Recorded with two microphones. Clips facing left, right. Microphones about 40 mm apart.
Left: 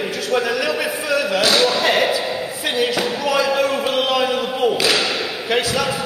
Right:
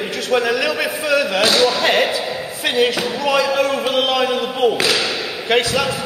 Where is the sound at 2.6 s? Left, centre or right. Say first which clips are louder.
Right 4 dB; centre.